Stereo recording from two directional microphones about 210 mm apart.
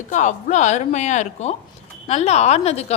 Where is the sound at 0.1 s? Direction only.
35° left (ahead or behind).